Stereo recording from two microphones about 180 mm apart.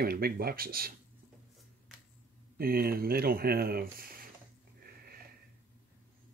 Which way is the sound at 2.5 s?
55° right (ahead or behind).